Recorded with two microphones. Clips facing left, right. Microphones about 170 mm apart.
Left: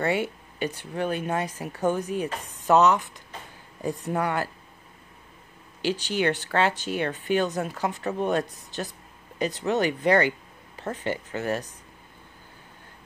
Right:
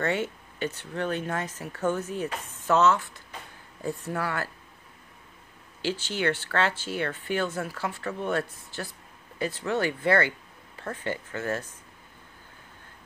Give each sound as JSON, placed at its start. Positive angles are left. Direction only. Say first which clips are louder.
{"t": 0.0, "sound": "speech", "louder": "left 2 dB", "side_deg": 10}
{"t": 5.8, "sound": "speech", "louder": "left 4 dB", "side_deg": 15}